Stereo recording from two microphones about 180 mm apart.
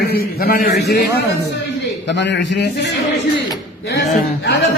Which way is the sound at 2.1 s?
75° left (ahead or behind).